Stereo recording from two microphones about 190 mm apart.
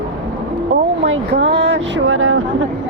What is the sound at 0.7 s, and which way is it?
Speech, 80° right.